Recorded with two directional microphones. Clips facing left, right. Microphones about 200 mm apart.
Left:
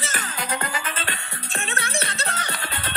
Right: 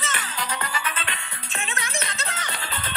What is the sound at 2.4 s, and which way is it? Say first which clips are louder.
Music: left 2 dB; 65° left (ahead or behind).